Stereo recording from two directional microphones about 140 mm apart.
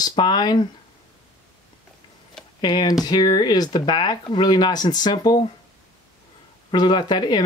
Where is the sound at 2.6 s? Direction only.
30° left (ahead or behind).